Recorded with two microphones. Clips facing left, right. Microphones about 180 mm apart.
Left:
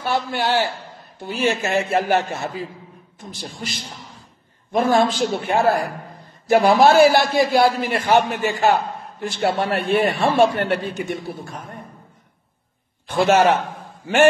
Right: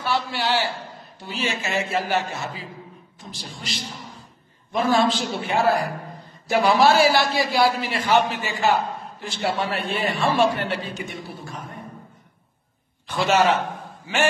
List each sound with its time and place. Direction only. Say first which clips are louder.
0.0 s a man's voice: left 3 dB; 50° left (ahead or behind)
13.0 s a man's voice: left 4 dB; 50° left (ahead or behind)